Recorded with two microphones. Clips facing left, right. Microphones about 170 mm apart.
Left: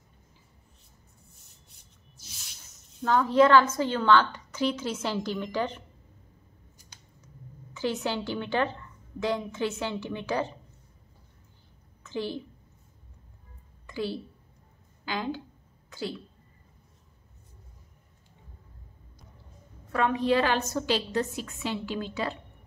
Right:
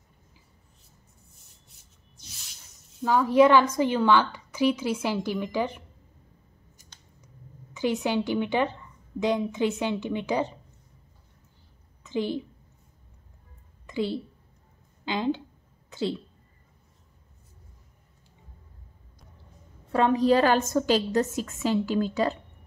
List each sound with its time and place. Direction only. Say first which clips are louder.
1.8 s rub: even; centre (ahead or behind)
3.0 s a woman's voice: right 2 dB; 10° right (ahead or behind)
7.7 s a woman's voice: right 4 dB; 15° right (ahead or behind)
12.0 s a woman's voice: right 4 dB; 15° right (ahead or behind)
13.8 s a woman's voice: right 4 dB; 20° right (ahead or behind)
15.9 s a sound: right 6 dB; 25° right (ahead or behind)
19.9 s a woman's voice: right 4 dB; 35° right (ahead or behind)